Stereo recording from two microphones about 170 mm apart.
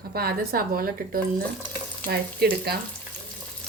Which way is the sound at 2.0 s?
65° right (ahead or behind).